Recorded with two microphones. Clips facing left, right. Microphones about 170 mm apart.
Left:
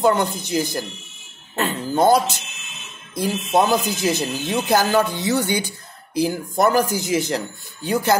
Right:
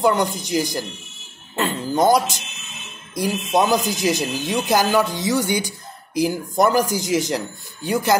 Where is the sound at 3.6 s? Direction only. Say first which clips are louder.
Even; 15° right (ahead or behind).